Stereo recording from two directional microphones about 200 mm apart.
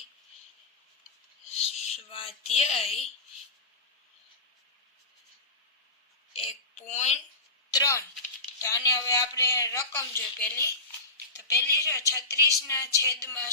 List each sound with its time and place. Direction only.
1.5 s a sound: 30° left (ahead or behind)
6.3 s speech: 30° left (ahead or behind)
7.7 s a woman's voice: 15° left (ahead or behind)